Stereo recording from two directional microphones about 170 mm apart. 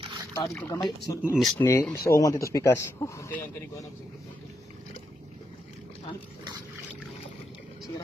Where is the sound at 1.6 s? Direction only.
15° left (ahead or behind).